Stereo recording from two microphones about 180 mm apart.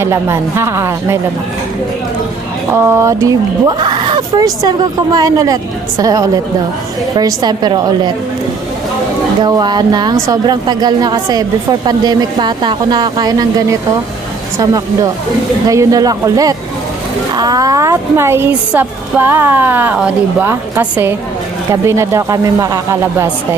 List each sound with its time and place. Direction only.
0.0 s a woman's voice: 15° right (ahead or behind)
2.7 s a woman's voice: 15° right (ahead or behind)
3.8 s a sound: 25° right (ahead or behind)
5.1 s a woman's voice: 20° right (ahead or behind)
9.4 s a woman's voice: 20° right (ahead or behind)